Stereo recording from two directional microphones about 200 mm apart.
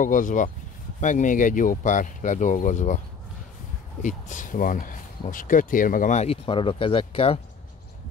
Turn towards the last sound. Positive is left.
turn(degrees=25)  # may be behind; listen again after turning